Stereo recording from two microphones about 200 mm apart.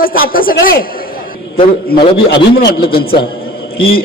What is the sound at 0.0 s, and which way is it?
Speech, 45° left (ahead or behind).